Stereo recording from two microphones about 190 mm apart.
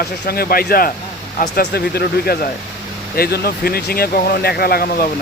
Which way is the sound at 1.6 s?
60° left (ahead or behind).